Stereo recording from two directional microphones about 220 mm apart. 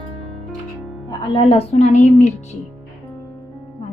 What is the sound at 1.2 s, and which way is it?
A woman's voice, 25° left (ahead or behind).